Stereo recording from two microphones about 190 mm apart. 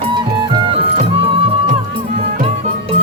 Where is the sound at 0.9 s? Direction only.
30° right (ahead or behind).